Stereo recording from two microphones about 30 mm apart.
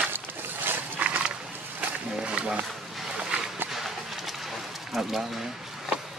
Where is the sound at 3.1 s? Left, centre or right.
Right.